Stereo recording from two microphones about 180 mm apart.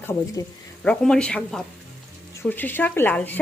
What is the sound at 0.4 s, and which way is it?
Speech, 20° left (ahead or behind).